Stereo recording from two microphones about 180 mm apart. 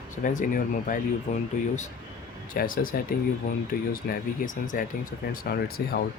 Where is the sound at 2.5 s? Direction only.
50° left (ahead or behind).